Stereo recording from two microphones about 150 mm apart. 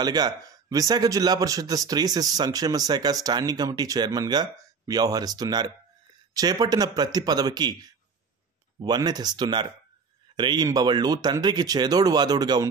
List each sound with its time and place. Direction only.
0.0 s speech: 25° right (ahead or behind)